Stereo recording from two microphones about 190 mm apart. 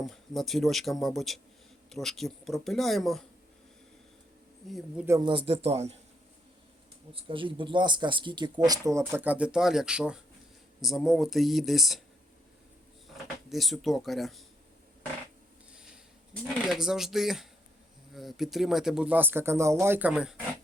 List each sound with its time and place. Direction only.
0.0 s speech: centre (ahead or behind)
5.0 s speech: 20° right (ahead or behind)
7.1 s speech: 30° right (ahead or behind); by 12.0 s centre (ahead or behind)
13.2 s speech: centre (ahead or behind)
16.3 s speech: 5° left (ahead or behind)